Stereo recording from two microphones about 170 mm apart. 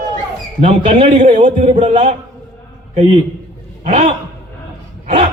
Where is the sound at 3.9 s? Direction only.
35° right (ahead or behind).